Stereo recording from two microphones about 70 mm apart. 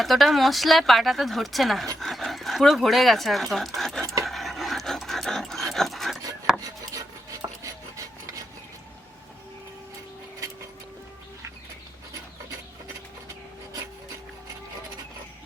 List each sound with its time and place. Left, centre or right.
0.0 s speech: centre
3.8 s keys jangling: centre
4.2 s dog: centre
6.5 s rub: centre
7.4 s filing: right